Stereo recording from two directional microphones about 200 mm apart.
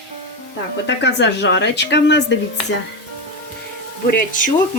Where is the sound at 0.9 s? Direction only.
60° left (ahead or behind).